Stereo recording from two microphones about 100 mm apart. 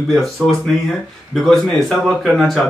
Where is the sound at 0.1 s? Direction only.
Centre (ahead or behind).